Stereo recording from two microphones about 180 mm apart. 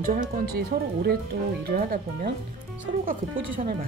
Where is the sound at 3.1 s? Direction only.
50° right (ahead or behind).